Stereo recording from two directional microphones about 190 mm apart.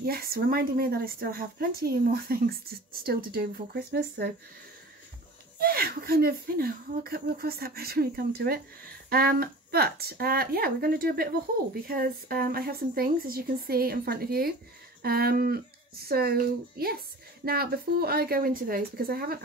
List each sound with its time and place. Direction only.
0.0 s speech: 50° right (ahead or behind)
5.6 s speech: 50° right (ahead or behind)